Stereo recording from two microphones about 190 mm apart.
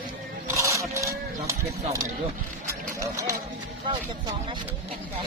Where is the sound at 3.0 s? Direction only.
15° right (ahead or behind).